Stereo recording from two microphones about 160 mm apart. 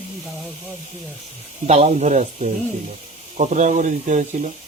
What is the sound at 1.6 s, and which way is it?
Speech, 40° right (ahead or behind).